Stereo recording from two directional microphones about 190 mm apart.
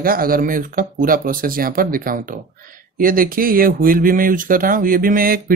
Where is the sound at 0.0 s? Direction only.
50° right (ahead or behind).